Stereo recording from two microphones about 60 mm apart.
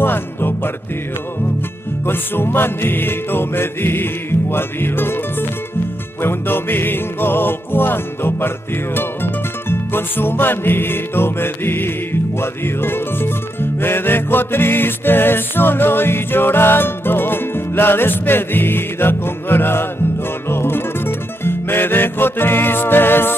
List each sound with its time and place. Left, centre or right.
0.0 s music: left
2.0 s music: left